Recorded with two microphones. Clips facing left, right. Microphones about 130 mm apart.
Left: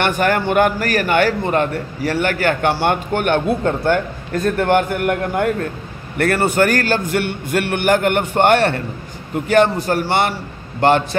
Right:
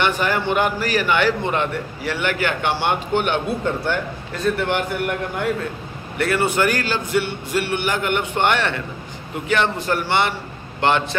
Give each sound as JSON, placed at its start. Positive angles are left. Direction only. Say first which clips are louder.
{"t": 0.0, "sound": "a man's voice", "louder": "left 3 dB", "side_deg": 50}